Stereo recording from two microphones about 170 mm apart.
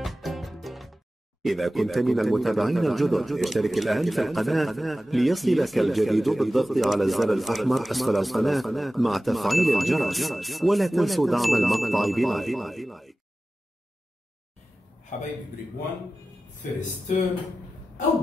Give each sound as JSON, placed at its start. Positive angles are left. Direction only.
{"t": 0.0, "sound": "music", "side_deg": 0}
{"t": 1.4, "sound": "speech", "side_deg": 0}
{"t": 15.1, "sound": "a man's voice", "side_deg": 45}